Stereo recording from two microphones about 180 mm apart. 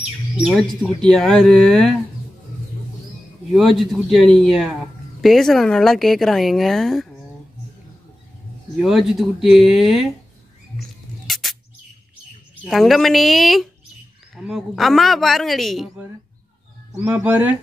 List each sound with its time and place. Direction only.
0.4 s a woman's voice: centre (ahead or behind)
3.5 s a woman's voice: centre (ahead or behind)
8.8 s a woman's voice: centre (ahead or behind)
11.2 s bird: centre (ahead or behind)
12.6 s a woman's voice: centre (ahead or behind)
17.0 s speech: 5° right (ahead or behind)